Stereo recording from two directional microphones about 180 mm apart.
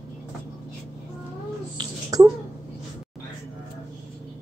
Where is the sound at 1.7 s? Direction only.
20° right (ahead or behind).